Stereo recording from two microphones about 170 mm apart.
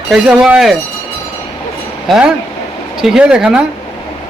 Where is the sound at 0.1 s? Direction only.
5° right (ahead or behind).